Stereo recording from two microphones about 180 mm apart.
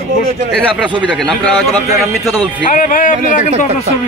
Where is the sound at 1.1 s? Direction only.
5° left (ahead or behind).